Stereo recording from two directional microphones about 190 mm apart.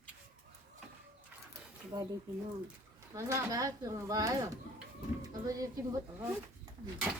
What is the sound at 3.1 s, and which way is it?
Speech, 15° right (ahead or behind).